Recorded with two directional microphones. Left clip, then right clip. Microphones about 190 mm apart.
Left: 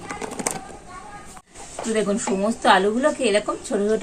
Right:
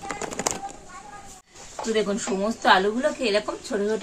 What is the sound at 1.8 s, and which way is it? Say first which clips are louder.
Speech: left 2 dB; centre (ahead or behind).